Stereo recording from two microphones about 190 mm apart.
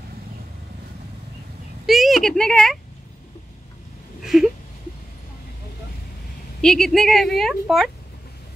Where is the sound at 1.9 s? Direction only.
Centre (ahead or behind).